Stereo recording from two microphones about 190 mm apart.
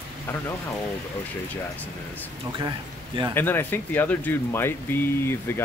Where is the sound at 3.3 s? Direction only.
10° left (ahead or behind).